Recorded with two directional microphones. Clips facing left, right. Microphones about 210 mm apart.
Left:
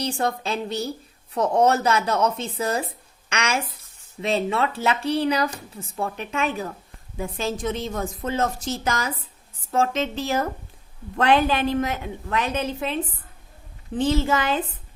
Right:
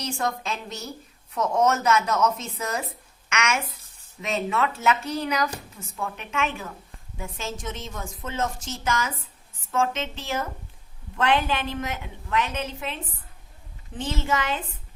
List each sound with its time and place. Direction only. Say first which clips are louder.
0.0 s a woman's voice: left 4 dB; 30° left (ahead or behind)